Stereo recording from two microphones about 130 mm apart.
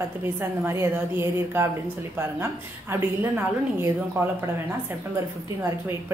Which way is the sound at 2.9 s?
20° right (ahead or behind).